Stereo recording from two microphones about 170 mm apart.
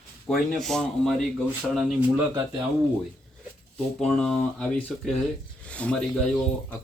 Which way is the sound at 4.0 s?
5° left (ahead or behind).